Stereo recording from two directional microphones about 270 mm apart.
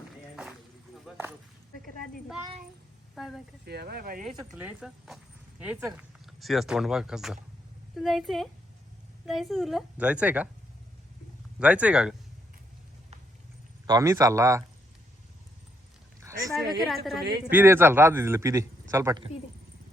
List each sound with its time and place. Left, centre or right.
1.0 s chop: centre
3.2 s a woman's voice: centre
3.7 s speech: right
4.5 s a woman's voice: centre
11.6 s a woman's voice: centre
13.8 s a man's voice: centre
16.8 s a woman's voice: centre
17.2 s speech: right
17.5 s a man's voice: centre